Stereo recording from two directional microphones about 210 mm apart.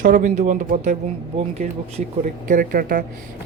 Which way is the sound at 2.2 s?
40° right (ahead or behind).